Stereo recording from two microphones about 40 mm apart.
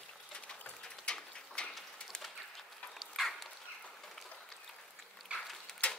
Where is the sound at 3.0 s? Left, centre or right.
Centre.